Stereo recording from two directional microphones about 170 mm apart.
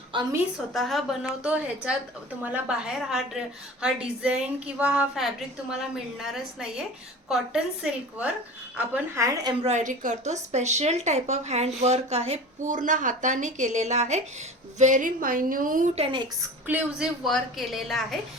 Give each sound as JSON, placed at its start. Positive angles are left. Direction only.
{"t": 0.1, "sound": "a sound", "side_deg": -25}
{"t": 0.7, "sound": "a woman's voice", "side_deg": 0}
{"t": 9.1, "sound": "a woman's voice", "side_deg": -20}
{"t": 9.6, "sound": "a woman's voice", "side_deg": -45}
{"t": 12.7, "sound": "a woman's voice", "side_deg": -50}
{"t": 16.0, "sound": "a woman's voice", "side_deg": -30}
{"t": 16.6, "sound": "a woman's voice", "side_deg": -10}